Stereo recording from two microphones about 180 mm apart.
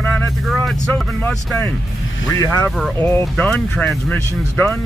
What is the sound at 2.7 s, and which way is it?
Speech, centre (ahead or behind).